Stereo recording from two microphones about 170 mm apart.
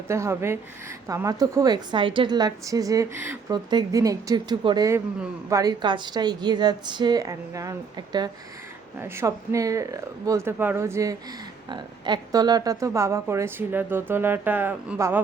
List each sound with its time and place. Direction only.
0.1 s a woman's voice: 15° right (ahead or behind)